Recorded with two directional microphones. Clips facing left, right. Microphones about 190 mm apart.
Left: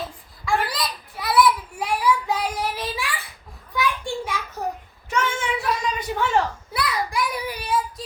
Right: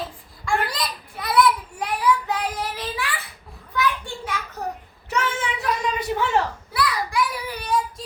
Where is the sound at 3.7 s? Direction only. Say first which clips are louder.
Even; 15° left (ahead or behind).